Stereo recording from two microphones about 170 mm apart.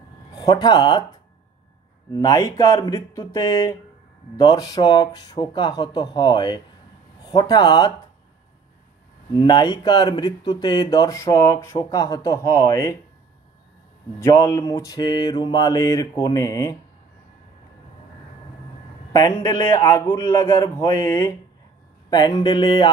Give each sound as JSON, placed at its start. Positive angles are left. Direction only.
{"t": 0.4, "sound": "speech", "side_deg": 25}
{"t": 2.1, "sound": "speech", "side_deg": 20}
{"t": 9.3, "sound": "speech", "side_deg": 25}
{"t": 14.2, "sound": "speech", "side_deg": 20}
{"t": 19.1, "sound": "a man's voice", "side_deg": 20}